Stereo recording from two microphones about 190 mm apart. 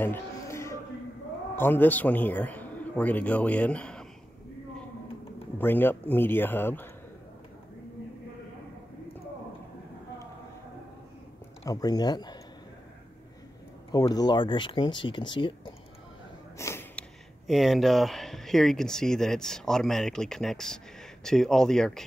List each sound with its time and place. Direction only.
0.0 s a sound: 15° left (ahead or behind)
1.6 s a man's voice: 10° left (ahead or behind)
5.6 s a man's voice: 10° left (ahead or behind)
11.6 s speech: 20° left (ahead or behind)
13.9 s speech: 20° left (ahead or behind)
16.5 s a sound: 15° left (ahead or behind)
17.5 s speech: centre (ahead or behind)